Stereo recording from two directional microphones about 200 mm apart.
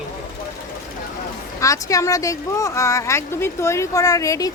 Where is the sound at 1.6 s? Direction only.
15° left (ahead or behind).